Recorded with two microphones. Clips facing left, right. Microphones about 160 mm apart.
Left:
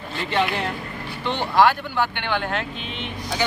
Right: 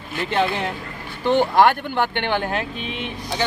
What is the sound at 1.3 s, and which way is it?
Speech, 50° right (ahead or behind).